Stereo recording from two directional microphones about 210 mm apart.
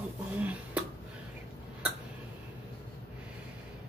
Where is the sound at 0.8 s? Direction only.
5° right (ahead or behind).